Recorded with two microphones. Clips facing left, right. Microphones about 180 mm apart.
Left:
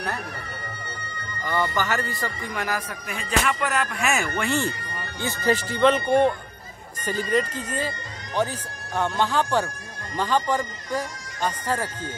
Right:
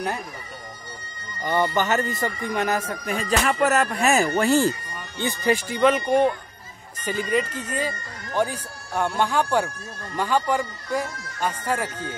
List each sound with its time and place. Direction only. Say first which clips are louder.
1.4 s speech: right 3 dB; 20° right (ahead or behind); by 4.6 s 40° right (ahead or behind)
5.2 s speech: right 1 dB; 10° right (ahead or behind)